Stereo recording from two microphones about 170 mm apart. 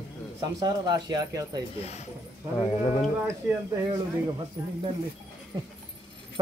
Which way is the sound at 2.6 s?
20° left (ahead or behind).